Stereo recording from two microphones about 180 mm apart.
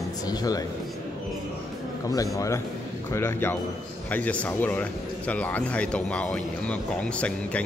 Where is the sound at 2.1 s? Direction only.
20° left (ahead or behind).